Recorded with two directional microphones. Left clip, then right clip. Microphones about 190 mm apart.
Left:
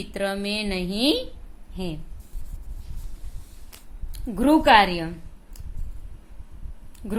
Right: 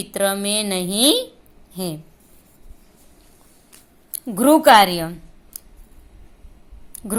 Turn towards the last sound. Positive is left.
turn(degrees=-15)  # may be behind; listen again after turning